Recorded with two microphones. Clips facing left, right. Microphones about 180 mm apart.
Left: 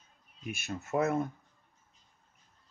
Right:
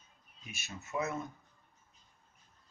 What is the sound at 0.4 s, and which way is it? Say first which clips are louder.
Speech: left 9 dB; 55° left (ahead or behind).